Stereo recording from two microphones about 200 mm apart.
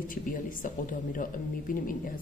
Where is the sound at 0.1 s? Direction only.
40° left (ahead or behind).